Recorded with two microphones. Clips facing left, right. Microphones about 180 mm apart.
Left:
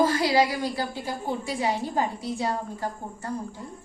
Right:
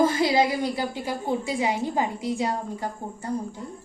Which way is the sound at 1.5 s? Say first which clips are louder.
Left 1 dB; 15° right (ahead or behind).